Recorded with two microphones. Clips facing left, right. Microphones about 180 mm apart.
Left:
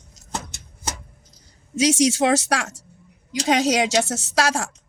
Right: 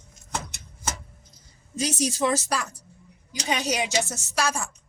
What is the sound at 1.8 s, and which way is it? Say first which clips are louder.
A woman's voice: left 7 dB; 80° left.